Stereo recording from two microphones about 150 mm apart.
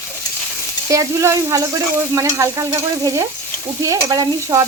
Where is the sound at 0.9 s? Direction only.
20° right (ahead or behind).